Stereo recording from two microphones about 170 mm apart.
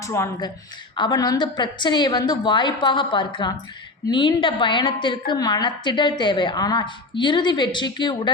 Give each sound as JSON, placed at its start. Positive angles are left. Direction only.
{"t": 0.0, "sound": "a woman's voice", "side_deg": 15}